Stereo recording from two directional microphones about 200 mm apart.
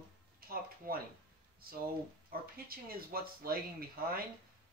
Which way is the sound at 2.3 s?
45° right (ahead or behind).